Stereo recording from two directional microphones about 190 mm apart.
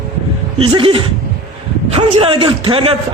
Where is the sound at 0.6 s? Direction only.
30° right (ahead or behind).